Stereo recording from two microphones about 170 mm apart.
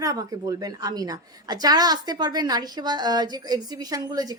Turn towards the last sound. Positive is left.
turn(degrees=-20)  # may be behind; listen again after turning